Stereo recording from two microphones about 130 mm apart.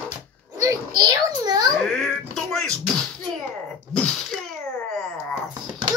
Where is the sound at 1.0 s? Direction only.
30° right (ahead or behind).